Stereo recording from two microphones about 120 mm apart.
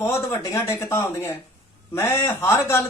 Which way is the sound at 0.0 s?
20° left (ahead or behind).